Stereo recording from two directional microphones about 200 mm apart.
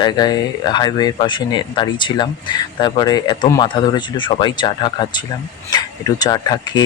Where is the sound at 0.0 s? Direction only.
20° left (ahead or behind).